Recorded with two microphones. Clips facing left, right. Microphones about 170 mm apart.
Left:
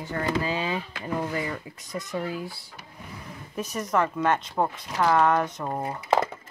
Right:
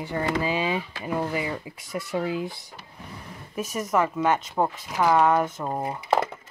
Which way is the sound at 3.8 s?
5° right (ahead or behind).